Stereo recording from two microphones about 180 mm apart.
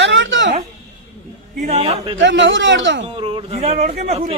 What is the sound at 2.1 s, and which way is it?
Speech, 90° right.